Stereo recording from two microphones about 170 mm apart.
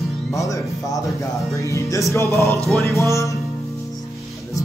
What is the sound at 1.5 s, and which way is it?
Music, 20° left (ahead or behind).